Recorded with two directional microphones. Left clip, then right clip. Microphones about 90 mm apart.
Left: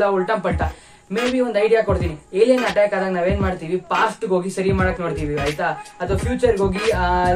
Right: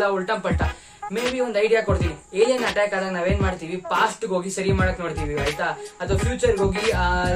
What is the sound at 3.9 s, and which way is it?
A woman's voice, 5° right (ahead or behind).